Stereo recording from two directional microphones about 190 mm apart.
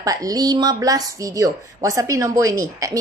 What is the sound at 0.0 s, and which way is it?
A woman's voice, 20° right (ahead or behind).